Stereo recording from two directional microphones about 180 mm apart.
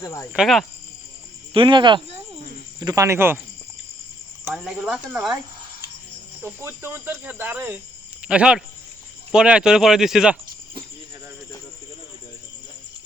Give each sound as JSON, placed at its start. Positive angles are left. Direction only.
{"t": 0.0, "sound": "speech", "side_deg": 15}
{"t": 0.3, "sound": "speech", "side_deg": 0}
{"t": 1.5, "sound": "speech", "side_deg": -25}
{"t": 2.8, "sound": "speech", "side_deg": -15}
{"t": 4.5, "sound": "speech", "side_deg": -5}
{"t": 6.4, "sound": "speech", "side_deg": -15}